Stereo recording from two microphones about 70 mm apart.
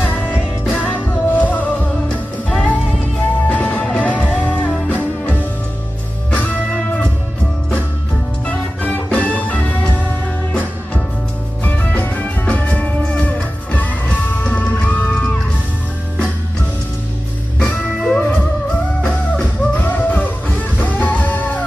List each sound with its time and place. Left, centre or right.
0.8 s music: left
8.5 s music: left
11.6 s music: left
17.6 s music: left